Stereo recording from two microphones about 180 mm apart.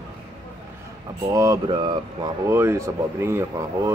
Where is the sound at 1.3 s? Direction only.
20° right (ahead or behind).